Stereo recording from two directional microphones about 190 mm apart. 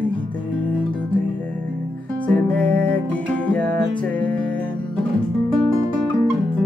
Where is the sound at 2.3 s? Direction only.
5° left (ahead or behind).